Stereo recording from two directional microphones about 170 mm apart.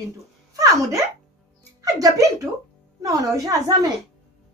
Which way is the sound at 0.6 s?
20° right (ahead or behind).